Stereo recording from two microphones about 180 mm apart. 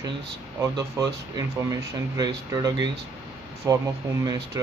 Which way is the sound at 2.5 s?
20° right (ahead or behind).